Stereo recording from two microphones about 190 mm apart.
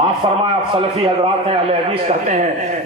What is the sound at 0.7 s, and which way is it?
A man's voice, 30° right (ahead or behind).